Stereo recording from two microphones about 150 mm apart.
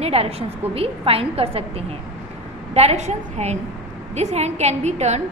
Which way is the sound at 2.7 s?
45° right (ahead or behind).